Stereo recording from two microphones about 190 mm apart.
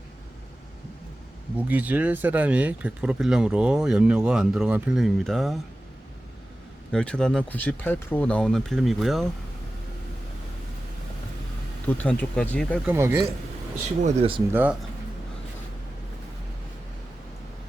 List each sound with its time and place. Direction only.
1.5 s speech: 10° right (ahead or behind)
6.9 s speech: 5° left (ahead or behind)
11.9 s speech: 10° left (ahead or behind)
12.9 s speech: 10° right (ahead or behind)
14.0 s speech: 30° right (ahead or behind)
14.5 s speech: 10° right (ahead or behind)